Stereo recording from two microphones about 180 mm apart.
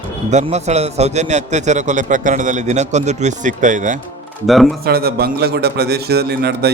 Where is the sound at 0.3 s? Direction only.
40° right (ahead or behind).